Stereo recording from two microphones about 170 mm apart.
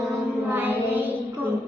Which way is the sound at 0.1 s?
10° right (ahead or behind).